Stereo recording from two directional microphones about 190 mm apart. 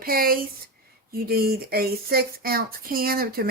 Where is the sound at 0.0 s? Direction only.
50° right (ahead or behind).